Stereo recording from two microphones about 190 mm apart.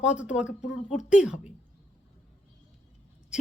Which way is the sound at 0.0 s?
5° right (ahead or behind).